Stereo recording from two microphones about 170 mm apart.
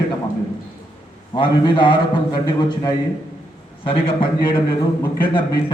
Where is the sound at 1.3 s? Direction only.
25° left (ahead or behind).